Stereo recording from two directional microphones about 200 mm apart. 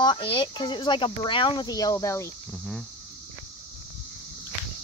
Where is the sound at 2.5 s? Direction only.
Centre (ahead or behind).